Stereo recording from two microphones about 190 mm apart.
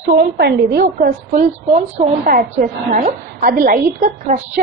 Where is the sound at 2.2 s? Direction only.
50° right (ahead or behind).